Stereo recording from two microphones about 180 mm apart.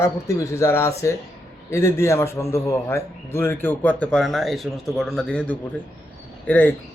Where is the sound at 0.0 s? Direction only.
15° left (ahead or behind).